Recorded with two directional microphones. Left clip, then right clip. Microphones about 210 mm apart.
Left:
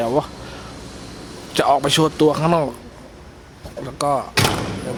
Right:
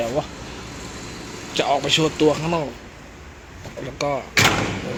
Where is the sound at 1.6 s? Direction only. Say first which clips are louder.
Left 3 dB; 35° left (ahead or behind).